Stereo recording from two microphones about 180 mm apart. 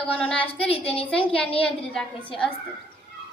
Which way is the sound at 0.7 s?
30° left (ahead or behind).